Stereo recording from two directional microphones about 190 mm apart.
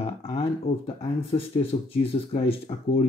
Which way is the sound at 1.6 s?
30° left (ahead or behind).